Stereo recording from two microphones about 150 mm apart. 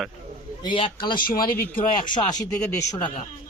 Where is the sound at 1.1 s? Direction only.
75° left (ahead or behind).